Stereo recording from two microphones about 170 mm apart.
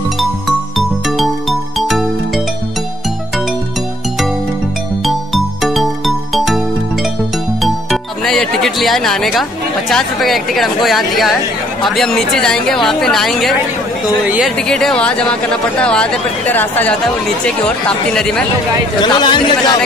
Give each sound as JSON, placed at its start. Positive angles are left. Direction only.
{"t": 0.2, "sound": "music", "side_deg": 0}
{"t": 5.0, "sound": "music", "side_deg": 0}
{"t": 7.6, "sound": "speech", "side_deg": 0}
{"t": 14.7, "sound": "speech", "side_deg": 5}
{"t": 18.9, "sound": "a man's voice", "side_deg": 25}